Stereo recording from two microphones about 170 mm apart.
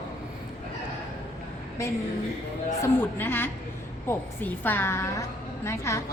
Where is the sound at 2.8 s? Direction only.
10° left (ahead or behind).